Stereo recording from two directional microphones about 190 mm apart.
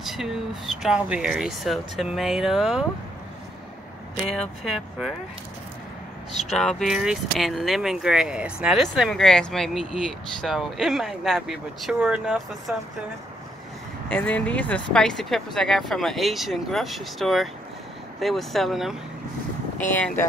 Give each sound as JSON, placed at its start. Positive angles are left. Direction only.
{"t": 0.0, "sound": "speech", "side_deg": 0}
{"t": 4.3, "sound": "speech", "side_deg": 0}
{"t": 6.3, "sound": "speech", "side_deg": 0}
{"t": 14.0, "sound": "speech", "side_deg": 10}
{"t": 19.9, "sound": "speech", "side_deg": 10}